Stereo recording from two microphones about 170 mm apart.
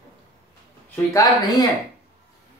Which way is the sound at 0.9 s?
20° left (ahead or behind).